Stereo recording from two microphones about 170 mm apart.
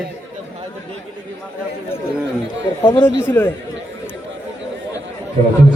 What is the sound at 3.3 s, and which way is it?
Speech, 10° left (ahead or behind).